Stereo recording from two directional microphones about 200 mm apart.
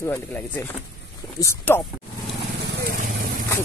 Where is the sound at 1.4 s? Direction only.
15° left (ahead or behind).